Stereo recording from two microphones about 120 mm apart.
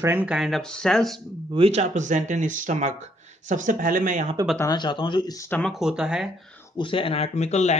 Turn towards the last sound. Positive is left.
turn(degrees=70)  # may be behind; listen again after turning